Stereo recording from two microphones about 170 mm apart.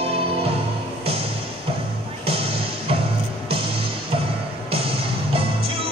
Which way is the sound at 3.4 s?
35° right (ahead or behind).